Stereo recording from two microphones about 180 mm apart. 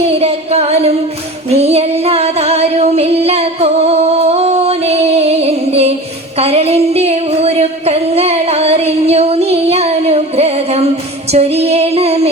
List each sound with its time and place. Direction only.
0.1 s music: 35° right (ahead or behind)
1.5 s singing: 35° right (ahead or behind)
11.3 s female singing: 35° right (ahead or behind)